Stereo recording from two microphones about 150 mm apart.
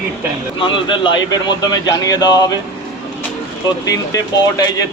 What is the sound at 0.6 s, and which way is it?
Speech, 35° left (ahead or behind).